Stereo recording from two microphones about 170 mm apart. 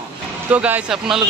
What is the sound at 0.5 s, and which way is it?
Speech, 10° right (ahead or behind).